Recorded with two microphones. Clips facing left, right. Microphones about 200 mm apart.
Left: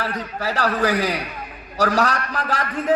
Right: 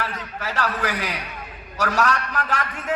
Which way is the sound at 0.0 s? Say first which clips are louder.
Left 4 dB; 35° left (ahead or behind).